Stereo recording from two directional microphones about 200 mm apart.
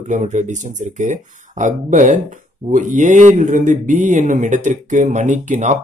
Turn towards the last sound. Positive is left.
turn(degrees=-35)  # may be behind; listen again after turning